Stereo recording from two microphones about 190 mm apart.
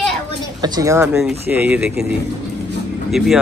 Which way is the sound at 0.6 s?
20° right (ahead or behind).